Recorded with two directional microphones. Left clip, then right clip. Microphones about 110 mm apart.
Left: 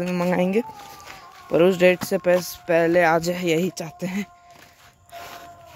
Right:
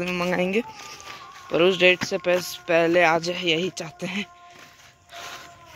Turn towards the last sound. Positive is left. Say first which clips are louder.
# even
turn(degrees=75)  # may be behind; listen again after turning